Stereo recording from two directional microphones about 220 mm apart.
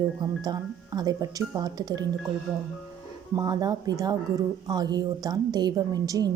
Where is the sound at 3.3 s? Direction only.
15° right (ahead or behind).